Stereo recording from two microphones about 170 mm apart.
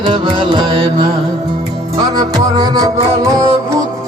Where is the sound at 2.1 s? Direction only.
20° right (ahead or behind).